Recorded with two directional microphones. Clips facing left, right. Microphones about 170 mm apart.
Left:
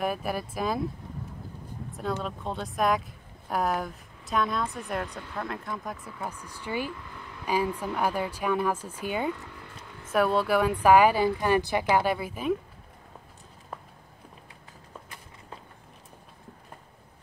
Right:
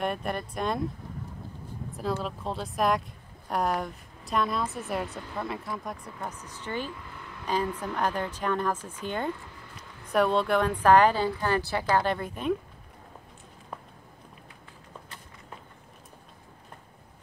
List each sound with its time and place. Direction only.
0.0 s a woman's voice: 5° left (ahead or behind)
1.9 s a woman's voice: centre (ahead or behind)